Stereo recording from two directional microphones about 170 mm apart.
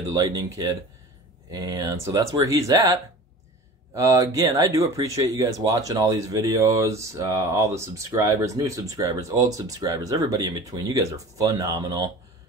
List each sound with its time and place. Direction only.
0.1 s speech: 20° right (ahead or behind)